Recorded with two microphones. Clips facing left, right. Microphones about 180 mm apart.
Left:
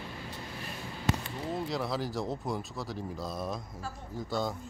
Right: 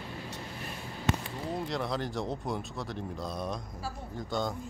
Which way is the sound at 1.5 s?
5° left (ahead or behind).